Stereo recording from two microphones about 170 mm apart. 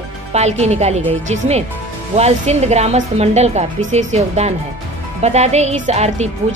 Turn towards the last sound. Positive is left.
turn(degrees=-40)  # may be behind; listen again after turning